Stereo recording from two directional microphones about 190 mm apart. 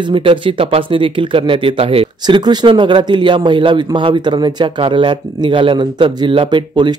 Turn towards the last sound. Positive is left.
turn(degrees=-25)  # may be behind; listen again after turning